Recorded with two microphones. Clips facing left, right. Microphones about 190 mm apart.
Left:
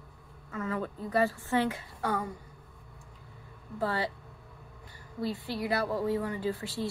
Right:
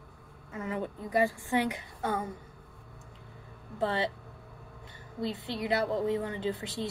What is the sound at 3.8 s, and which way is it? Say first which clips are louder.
Speech: right 1 dB; 25° right (ahead or behind).